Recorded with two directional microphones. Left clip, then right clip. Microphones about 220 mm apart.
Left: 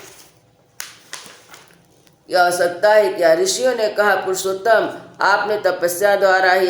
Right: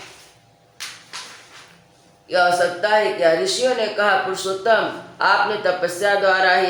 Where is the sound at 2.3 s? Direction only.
55° left (ahead or behind).